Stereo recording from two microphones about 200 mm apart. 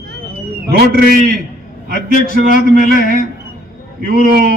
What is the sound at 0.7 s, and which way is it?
A man's voice, 50° right (ahead or behind).